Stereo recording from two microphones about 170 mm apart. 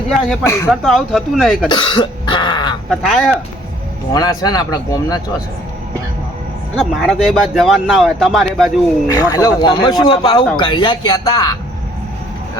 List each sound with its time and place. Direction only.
0.4 s speech: 15° left (ahead or behind)
0.7 s speech: centre (ahead or behind)
1.7 s throat clearing: 25° left (ahead or behind)
2.9 s speech: centre (ahead or behind)
4.1 s speech: 20° left (ahead or behind)
6.7 s speech: centre (ahead or behind)
9.1 s speech: 20° left (ahead or behind)